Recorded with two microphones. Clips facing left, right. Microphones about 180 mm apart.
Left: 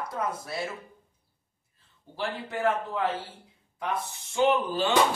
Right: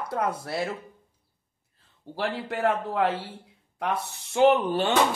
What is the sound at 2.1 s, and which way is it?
Speech, 65° right (ahead or behind).